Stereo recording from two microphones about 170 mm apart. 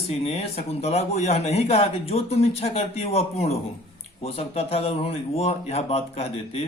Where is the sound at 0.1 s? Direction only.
40° left (ahead or behind).